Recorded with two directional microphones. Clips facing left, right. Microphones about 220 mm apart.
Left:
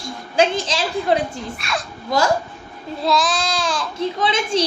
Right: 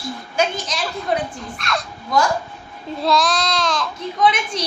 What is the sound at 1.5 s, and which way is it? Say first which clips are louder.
Speech: right 4 dB; 5° left (ahead or behind).